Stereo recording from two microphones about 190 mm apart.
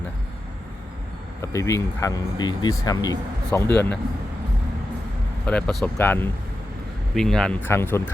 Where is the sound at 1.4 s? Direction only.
15° left (ahead or behind).